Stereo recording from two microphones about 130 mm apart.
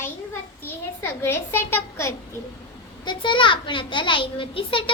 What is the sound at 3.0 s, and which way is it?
A child's voice, 40° left (ahead or behind).